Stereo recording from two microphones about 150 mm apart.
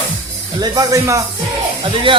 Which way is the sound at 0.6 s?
25° right (ahead or behind).